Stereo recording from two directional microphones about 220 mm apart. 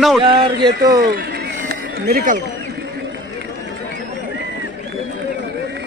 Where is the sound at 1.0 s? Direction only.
50° right (ahead or behind).